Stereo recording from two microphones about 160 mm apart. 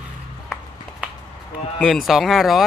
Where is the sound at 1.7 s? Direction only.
Centre (ahead or behind).